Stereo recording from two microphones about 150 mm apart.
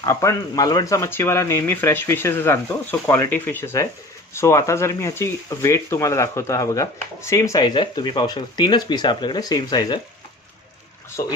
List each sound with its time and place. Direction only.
0.0 s speech: 20° left (ahead or behind)
11.2 s speech: 20° left (ahead or behind)